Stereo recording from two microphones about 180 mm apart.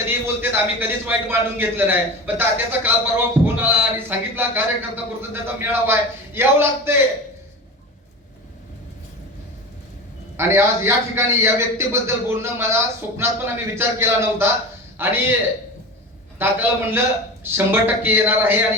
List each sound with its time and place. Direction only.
0.3 s a man's voice: 10° right (ahead or behind)
10.3 s a man's voice: 15° right (ahead or behind)
16.4 s a man's voice: 10° right (ahead or behind)